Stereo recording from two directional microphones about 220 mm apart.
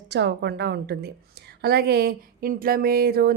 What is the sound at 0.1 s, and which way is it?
Speech, 50° right (ahead or behind).